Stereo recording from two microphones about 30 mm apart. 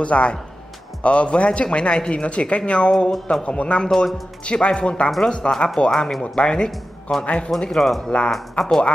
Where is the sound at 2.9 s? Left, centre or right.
Left.